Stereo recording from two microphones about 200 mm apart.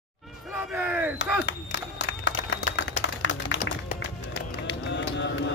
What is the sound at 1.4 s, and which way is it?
Applause, 65° left (ahead or behind).